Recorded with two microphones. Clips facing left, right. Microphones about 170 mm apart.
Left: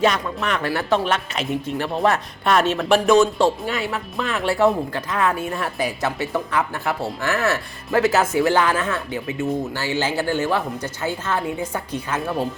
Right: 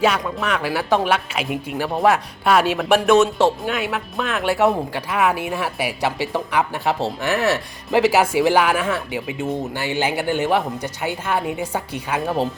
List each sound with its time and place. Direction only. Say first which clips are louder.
0.0 s speech: right 1 dB; 5° right (ahead or behind)
6.3 s speech: right 1 dB; 20° right (ahead or behind)